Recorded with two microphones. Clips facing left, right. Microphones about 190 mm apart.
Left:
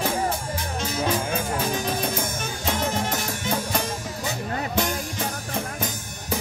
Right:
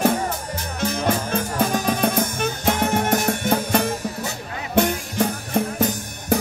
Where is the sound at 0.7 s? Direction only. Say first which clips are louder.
Right 4 dB; 60° right (ahead or behind).